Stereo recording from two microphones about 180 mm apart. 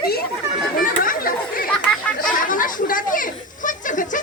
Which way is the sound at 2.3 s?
50° left (ahead or behind).